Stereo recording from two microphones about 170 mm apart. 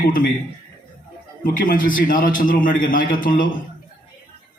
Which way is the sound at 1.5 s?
55° left (ahead or behind).